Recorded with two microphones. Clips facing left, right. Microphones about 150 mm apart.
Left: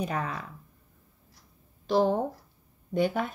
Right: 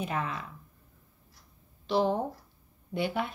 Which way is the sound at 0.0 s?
40° left (ahead or behind).